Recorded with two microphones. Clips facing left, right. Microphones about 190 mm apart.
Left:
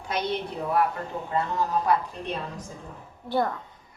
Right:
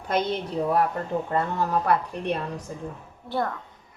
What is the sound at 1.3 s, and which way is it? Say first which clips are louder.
A woman's voice: left 1 dB; 60° right (ahead or behind).